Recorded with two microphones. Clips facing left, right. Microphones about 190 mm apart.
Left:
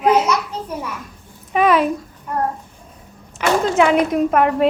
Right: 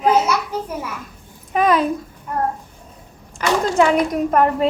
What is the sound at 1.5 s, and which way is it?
Speech, 5° left (ahead or behind).